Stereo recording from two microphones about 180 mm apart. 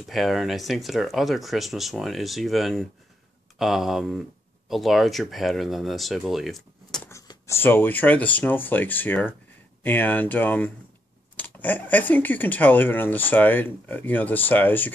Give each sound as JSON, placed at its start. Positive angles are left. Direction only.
{"t": 0.1, "sound": "speech", "side_deg": 0}
{"t": 7.1, "sound": "speech", "side_deg": 15}